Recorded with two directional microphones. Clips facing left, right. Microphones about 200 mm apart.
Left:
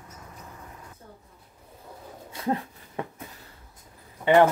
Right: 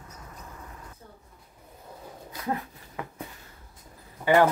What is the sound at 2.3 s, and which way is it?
Dog, 30° left (ahead or behind).